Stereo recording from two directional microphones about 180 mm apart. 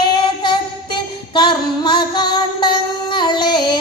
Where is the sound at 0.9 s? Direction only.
25° left (ahead or behind).